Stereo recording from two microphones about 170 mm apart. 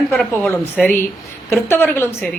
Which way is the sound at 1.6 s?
15° left (ahead or behind).